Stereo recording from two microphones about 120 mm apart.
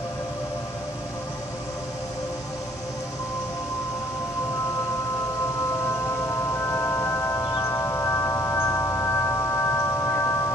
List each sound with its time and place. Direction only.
6.2 s chime: 20° left (ahead or behind)